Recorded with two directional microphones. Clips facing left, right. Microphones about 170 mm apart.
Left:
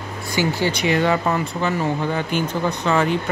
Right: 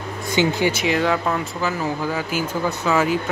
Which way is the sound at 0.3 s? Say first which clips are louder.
Right 2 dB; 20° right (ahead or behind).